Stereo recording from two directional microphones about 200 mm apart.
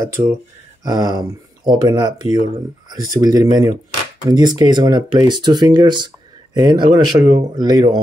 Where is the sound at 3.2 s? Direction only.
20° right (ahead or behind).